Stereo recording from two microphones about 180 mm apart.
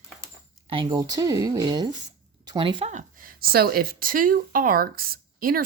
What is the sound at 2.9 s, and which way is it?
Speech, 45° right (ahead or behind).